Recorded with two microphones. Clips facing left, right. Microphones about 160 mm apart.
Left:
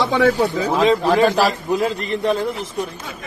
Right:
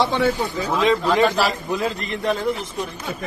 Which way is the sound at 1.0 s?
40° left (ahead or behind).